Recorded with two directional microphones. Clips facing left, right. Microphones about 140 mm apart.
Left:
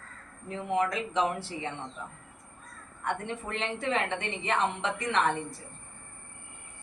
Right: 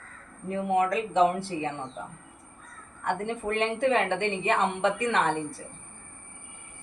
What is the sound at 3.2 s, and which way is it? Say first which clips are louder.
Speech: right 6 dB; 55° right (ahead or behind).